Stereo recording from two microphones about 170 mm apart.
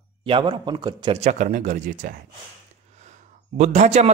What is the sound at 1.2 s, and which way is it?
Speech, 45° right (ahead or behind).